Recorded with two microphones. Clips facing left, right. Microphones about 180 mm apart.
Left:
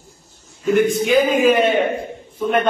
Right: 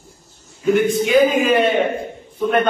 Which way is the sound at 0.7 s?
Centre (ahead or behind).